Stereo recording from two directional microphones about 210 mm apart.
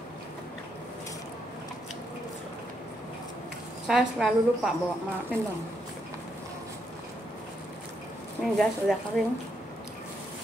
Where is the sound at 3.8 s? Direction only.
Centre (ahead or behind).